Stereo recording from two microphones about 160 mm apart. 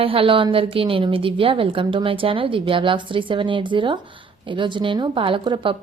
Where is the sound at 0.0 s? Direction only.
35° right (ahead or behind).